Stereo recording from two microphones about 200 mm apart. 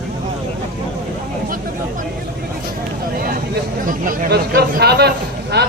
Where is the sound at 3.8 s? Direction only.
40° right (ahead or behind).